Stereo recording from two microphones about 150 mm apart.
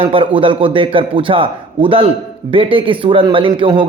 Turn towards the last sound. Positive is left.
turn(degrees=-30)  # may be behind; listen again after turning